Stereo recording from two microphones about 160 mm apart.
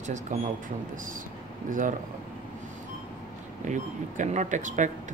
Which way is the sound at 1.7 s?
55° right (ahead or behind).